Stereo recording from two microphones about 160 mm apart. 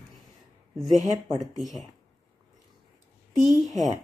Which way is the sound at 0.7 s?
Centre (ahead or behind).